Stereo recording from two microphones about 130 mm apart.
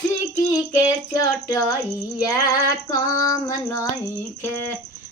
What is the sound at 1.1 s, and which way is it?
Female singing, 30° left (ahead or behind).